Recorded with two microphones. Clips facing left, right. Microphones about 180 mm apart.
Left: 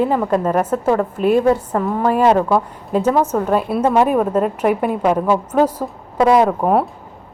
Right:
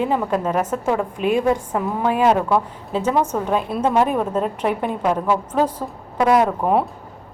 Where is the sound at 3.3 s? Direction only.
5° left (ahead or behind).